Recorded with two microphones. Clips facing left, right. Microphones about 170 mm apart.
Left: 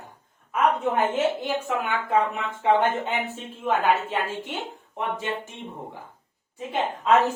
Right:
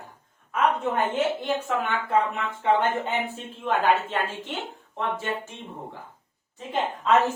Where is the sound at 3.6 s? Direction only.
10° left (ahead or behind).